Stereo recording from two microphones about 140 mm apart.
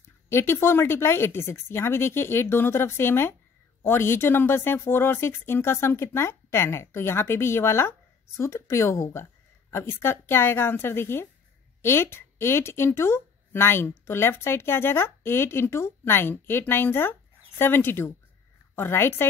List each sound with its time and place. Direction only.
0.3 s a woman's voice: 15° left (ahead or behind)